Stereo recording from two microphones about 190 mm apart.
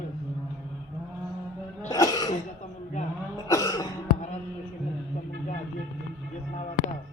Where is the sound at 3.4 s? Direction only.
20° left (ahead or behind).